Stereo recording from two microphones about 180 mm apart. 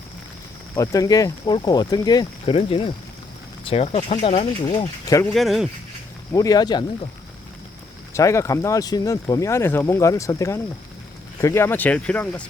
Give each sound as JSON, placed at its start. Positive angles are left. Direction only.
{"t": 0.8, "sound": "speech", "side_deg": 20}
{"t": 5.0, "sound": "speech", "side_deg": 20}
{"t": 5.3, "sound": "speech", "side_deg": 0}
{"t": 6.3, "sound": "speech", "side_deg": 20}
{"t": 8.1, "sound": "speech", "side_deg": 15}